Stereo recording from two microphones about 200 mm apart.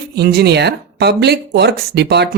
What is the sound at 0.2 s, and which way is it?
Speech, 55° right (ahead or behind).